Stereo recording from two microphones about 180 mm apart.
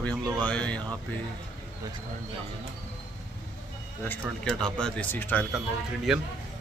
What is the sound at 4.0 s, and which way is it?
Speech, 5° left (ahead or behind).